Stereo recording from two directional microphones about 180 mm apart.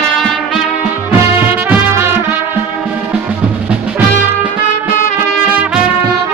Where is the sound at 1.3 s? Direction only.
15° right (ahead or behind).